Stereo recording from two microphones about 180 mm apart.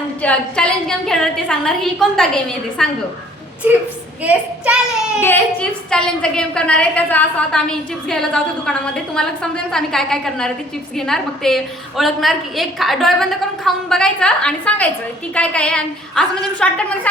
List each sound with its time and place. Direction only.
0.2 s a woman's voice: 5° left (ahead or behind)
4.2 s a child's voice: 10° right (ahead or behind)
5.2 s a woman's voice: 10° left (ahead or behind)